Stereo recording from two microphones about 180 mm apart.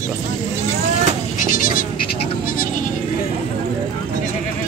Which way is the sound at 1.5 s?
50° left (ahead or behind).